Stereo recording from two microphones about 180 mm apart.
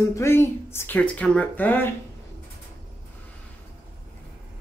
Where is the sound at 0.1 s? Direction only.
15° left (ahead or behind).